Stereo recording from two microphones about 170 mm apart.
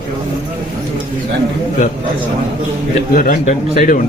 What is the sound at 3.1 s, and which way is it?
Speech, 55° left (ahead or behind).